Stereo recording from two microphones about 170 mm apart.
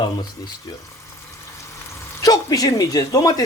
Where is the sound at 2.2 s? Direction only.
20° left (ahead or behind).